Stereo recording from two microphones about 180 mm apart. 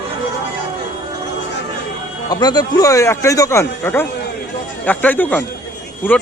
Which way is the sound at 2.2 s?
20° left (ahead or behind).